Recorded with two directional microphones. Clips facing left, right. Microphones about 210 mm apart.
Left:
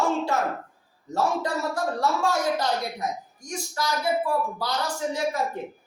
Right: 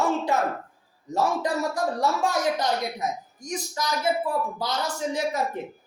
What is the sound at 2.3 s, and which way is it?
Speech, 20° right (ahead or behind).